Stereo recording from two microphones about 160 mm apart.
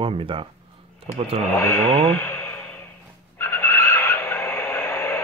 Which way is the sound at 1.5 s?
15° left (ahead or behind).